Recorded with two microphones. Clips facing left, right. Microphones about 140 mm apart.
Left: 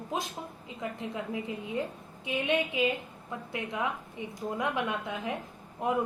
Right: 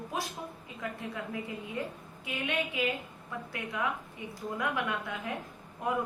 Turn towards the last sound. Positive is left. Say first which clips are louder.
# left 3 dB
turn(degrees=20)  # may be behind; listen again after turning